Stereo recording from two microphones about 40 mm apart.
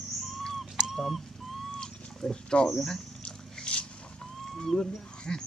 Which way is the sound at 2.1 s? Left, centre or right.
Centre.